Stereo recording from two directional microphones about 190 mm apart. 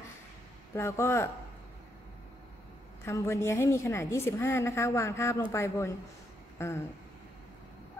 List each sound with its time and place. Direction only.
0.7 s a woman's voice: 15° left (ahead or behind)
3.1 s a woman's voice: 15° left (ahead or behind)